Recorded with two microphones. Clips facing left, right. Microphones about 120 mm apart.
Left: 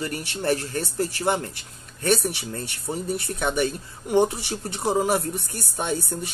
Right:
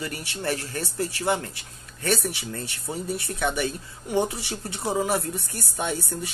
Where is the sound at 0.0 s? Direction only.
35° left (ahead or behind).